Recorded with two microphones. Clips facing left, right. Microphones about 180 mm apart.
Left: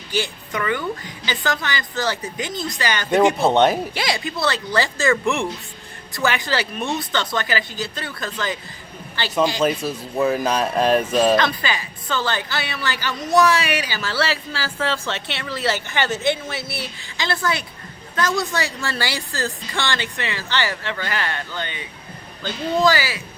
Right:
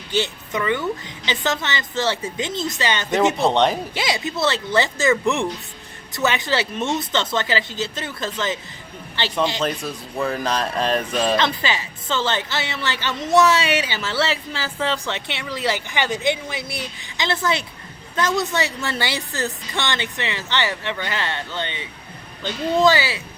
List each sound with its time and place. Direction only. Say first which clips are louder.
0.1 s a woman's voice: right 2 dB; 20° right (ahead or behind)
3.4 s speech: left 2 dB; 5° left (ahead or behind)
3.9 s a woman's voice: right 1 dB; 20° right (ahead or behind)
6.1 s a woman's voice: right 1 dB; 20° right (ahead or behind)
9.6 s speech: left 4 dB; 5° left (ahead or behind)
11.3 s a woman's voice: left 1 dB; 25° right (ahead or behind)